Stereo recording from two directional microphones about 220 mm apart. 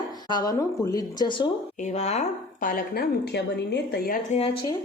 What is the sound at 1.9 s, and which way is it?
A woman's voice, 30° left (ahead or behind).